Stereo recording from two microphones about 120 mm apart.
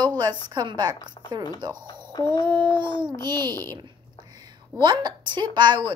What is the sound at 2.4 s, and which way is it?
A woman's voice, 40° right (ahead or behind).